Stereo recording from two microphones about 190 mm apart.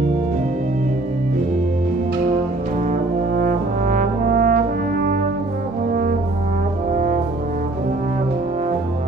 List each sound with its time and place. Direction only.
2.9 s brass instrument: 45° right (ahead or behind)